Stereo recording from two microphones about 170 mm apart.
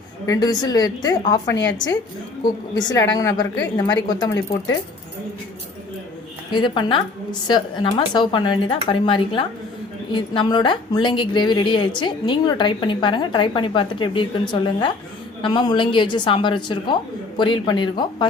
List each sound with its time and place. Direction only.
0.3 s a woman's voice: 25° left (ahead or behind)
2.4 s a woman's voice: 25° left (ahead or behind)
6.5 s a woman's voice: 25° left (ahead or behind)